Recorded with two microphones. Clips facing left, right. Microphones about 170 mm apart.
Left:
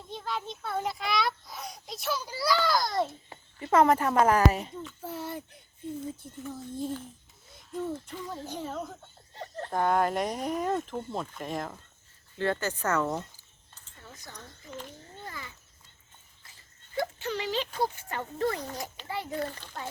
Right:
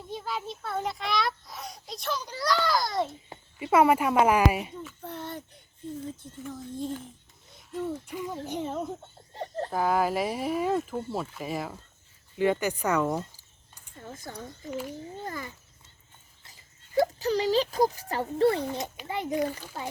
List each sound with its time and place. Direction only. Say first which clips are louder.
0.1 s a child's voice: right 1 dB; 5° right (ahead or behind)
7.5 s a sound: right 1 dB; centre (ahead or behind)
8.1 s speech: right 4 dB; 15° right (ahead or behind)
9.3 s chicken: right 5 dB; 35° right (ahead or behind)
9.6 s speech: even; 5° right (ahead or behind)
14.4 s speech: right 8 dB; 10° right (ahead or behind)
15.3 s speech: right 4 dB; 45° right (ahead or behind)
17.0 s speech: right 7 dB; 35° right (ahead or behind)
19.0 s speech: right 5 dB; 20° right (ahead or behind)